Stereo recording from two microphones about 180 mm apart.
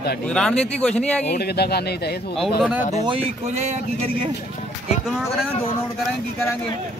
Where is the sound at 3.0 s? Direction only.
30° right (ahead or behind).